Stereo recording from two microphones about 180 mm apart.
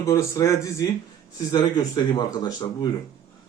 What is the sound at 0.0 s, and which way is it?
Speech, 15° left (ahead or behind).